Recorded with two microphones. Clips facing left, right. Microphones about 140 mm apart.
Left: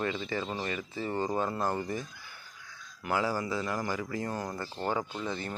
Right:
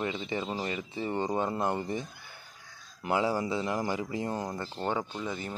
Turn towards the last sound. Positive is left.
turn(degrees=-10)  # may be behind; listen again after turning